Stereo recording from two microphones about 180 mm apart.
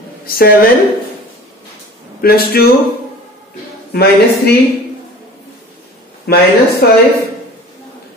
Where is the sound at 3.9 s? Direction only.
60° left (ahead or behind).